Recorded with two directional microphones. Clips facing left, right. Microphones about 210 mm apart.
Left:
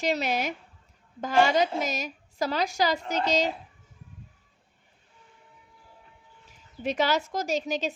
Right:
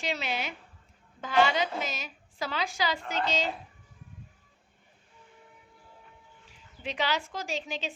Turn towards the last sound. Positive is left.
turn(degrees=40)  # may be behind; listen again after turning